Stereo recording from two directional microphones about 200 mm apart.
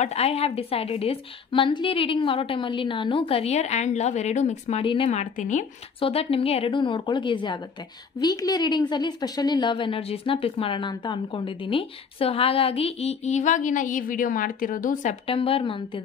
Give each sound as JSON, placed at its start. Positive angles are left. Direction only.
{"t": 0.0, "sound": "a woman's voice", "side_deg": 30}
{"t": 15.2, "sound": "a woman's voice", "side_deg": 30}